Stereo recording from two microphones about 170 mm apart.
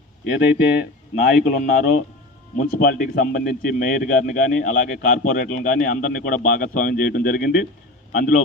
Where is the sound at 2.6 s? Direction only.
60° left (ahead or behind).